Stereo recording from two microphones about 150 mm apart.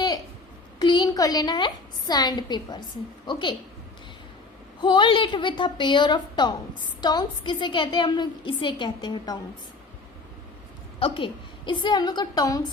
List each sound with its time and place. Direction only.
0.8 s a woman's voice: 30° left (ahead or behind)
4.8 s a woman's voice: 30° left (ahead or behind)
11.0 s a woman's voice: 35° left (ahead or behind)